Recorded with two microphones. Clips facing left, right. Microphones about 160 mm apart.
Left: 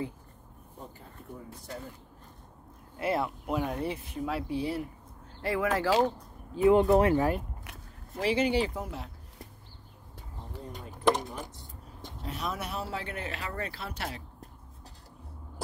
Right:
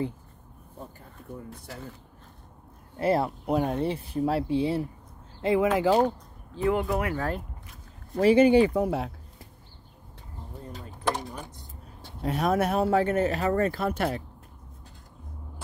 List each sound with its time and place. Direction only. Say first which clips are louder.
3.0 s speech: right 5 dB; 35° right (ahead or behind); by 5.9 s 20° right (ahead or behind)
6.6 s speech: left 5 dB; 20° left (ahead or behind)
8.2 s speech: right 9 dB; 50° right (ahead or behind); by 9.1 s 70° right (ahead or behind)
12.2 s speech: right 11 dB; 60° right (ahead or behind)